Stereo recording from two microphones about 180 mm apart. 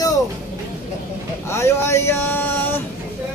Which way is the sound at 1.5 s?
15° left (ahead or behind).